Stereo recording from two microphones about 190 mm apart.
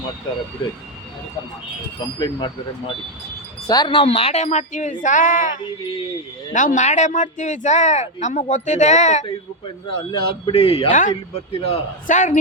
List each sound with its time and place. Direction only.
2.1 s a man's voice: 20° left (ahead or behind)
3.7 s speech: 25° left (ahead or behind)
10.1 s a man's voice: 25° left (ahead or behind); by 12.4 s 40° left (ahead or behind)